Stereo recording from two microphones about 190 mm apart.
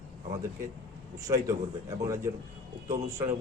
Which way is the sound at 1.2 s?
15° right (ahead or behind).